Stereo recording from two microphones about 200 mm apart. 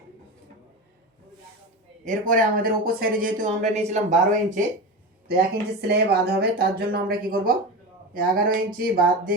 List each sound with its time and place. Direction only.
2.0 s speech: 40° right (ahead or behind)
5.9 s speech: 50° right (ahead or behind)